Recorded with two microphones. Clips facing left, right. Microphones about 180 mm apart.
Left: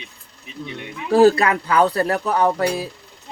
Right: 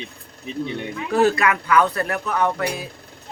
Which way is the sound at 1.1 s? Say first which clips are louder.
Left 5 dB; 35° left (ahead or behind).